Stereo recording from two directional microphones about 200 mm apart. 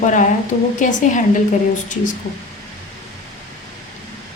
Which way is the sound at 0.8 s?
40° left (ahead or behind).